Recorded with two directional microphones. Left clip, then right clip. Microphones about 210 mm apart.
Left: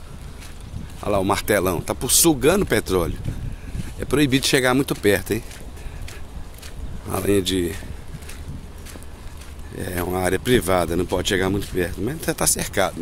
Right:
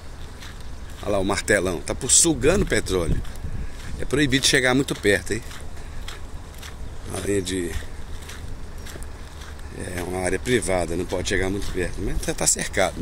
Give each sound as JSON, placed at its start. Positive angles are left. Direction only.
{"t": 1.0, "sound": "speech", "side_deg": 15}
{"t": 7.1, "sound": "speech", "side_deg": 30}
{"t": 9.8, "sound": "speech", "side_deg": 25}